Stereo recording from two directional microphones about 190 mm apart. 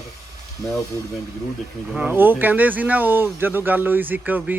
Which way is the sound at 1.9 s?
10° right (ahead or behind).